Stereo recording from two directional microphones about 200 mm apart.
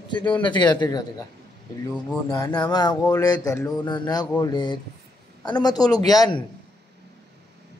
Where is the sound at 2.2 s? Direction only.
20° left (ahead or behind).